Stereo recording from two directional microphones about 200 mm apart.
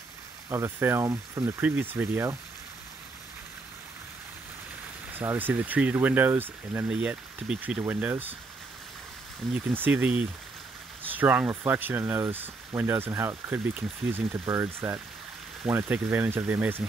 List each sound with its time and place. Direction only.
0.5 s speech: 10° right (ahead or behind)
5.1 s speech: 10° right (ahead or behind)
9.5 s speech: 10° right (ahead or behind)